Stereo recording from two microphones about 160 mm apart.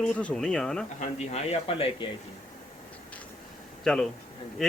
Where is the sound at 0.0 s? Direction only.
5° left (ahead or behind).